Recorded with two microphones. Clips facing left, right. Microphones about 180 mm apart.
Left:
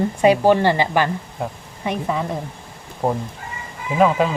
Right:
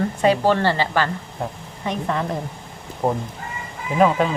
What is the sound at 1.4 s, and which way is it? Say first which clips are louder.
Speech: even; 5° left (ahead or behind).